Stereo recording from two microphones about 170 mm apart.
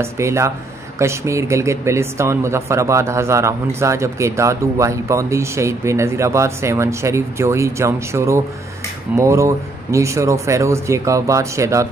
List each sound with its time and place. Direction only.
0.0 s speech: 15° right (ahead or behind)